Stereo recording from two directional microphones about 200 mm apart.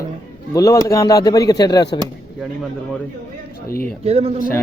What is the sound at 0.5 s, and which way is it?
A man's voice, 15° left (ahead or behind).